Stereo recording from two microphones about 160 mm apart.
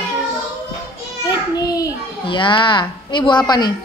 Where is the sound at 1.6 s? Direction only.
25° left (ahead or behind).